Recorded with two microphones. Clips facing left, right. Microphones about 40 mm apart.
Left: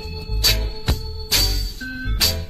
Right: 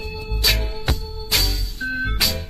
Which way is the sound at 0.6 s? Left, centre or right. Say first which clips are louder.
Right 1 dB; centre.